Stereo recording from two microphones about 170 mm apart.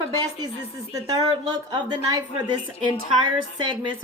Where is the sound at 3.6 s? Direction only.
30° right (ahead or behind).